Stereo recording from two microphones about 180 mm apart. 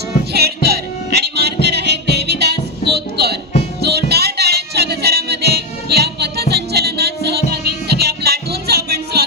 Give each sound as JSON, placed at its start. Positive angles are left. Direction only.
{"t": 0.3, "sound": "music", "side_deg": -65}